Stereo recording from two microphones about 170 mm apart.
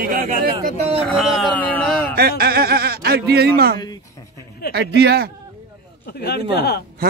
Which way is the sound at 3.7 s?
25° left (ahead or behind).